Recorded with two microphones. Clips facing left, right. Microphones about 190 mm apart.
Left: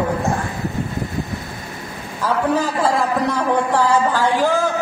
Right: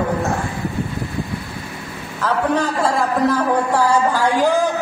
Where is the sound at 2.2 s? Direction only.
5° left (ahead or behind); by 4.7 s 15° right (ahead or behind).